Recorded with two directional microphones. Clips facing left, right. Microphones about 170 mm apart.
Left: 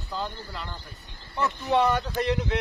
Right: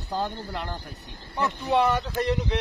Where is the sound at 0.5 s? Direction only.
60° right (ahead or behind).